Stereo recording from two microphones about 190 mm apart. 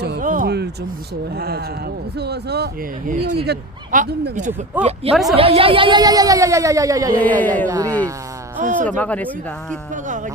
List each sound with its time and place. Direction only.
0.0 s a sound: 55° right (ahead or behind)
1.4 s speech: 55° right (ahead or behind)
3.1 s speech: 40° right (ahead or behind)
3.3 s speech: 60° right (ahead or behind)
4.7 s a woman's voice: 10° right (ahead or behind)
5.4 s speech: 30° right (ahead or behind)
7.3 s speech: 10° left (ahead or behind)
7.7 s speech: 15° right (ahead or behind)
8.5 s speech: 40° right (ahead or behind)
8.9 s speech: 10° left (ahead or behind)
9.9 s speech: 40° right (ahead or behind)